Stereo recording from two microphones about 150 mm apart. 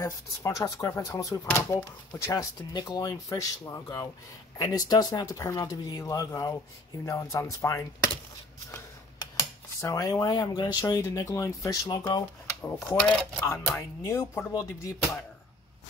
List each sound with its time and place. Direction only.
0.0 s speech: 20° left (ahead or behind)
9.4 s speech: 20° left (ahead or behind)
12.7 s speech: 5° left (ahead or behind); by 15.0 s 20° left (ahead or behind)